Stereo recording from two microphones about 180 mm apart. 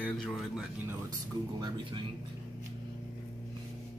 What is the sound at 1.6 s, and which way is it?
Speech, 25° right (ahead or behind).